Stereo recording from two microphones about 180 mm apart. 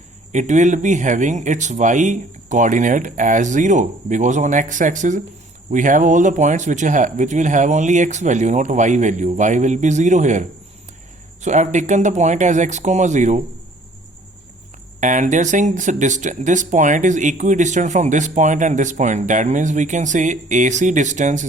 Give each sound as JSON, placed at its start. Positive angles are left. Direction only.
{"t": 0.3, "sound": "speech", "side_deg": -40}
{"t": 11.4, "sound": "speech", "side_deg": -40}
{"t": 15.0, "sound": "speech", "side_deg": -45}